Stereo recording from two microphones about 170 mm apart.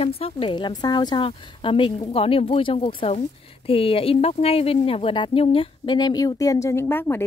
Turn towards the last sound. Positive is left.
turn(degrees=15)  # may be behind; listen again after turning